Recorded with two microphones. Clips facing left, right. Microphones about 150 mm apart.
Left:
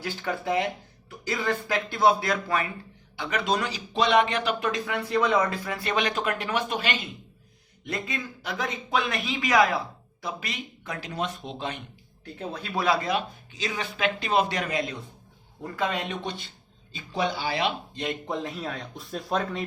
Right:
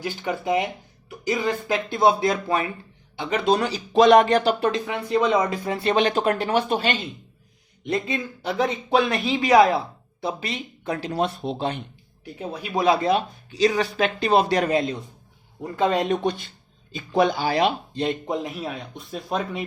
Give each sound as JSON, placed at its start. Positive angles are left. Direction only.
{"t": 0.0, "sound": "speech", "side_deg": -15}
{"t": 12.2, "sound": "speech", "side_deg": -10}
{"t": 12.7, "sound": "speech", "side_deg": -25}
{"t": 18.3, "sound": "speech", "side_deg": -15}